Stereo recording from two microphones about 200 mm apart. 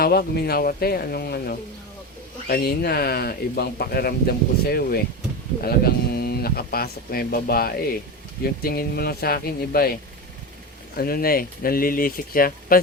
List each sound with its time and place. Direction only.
0.0 s speech: 50° left (ahead or behind)
10.9 s speech: 50° left (ahead or behind)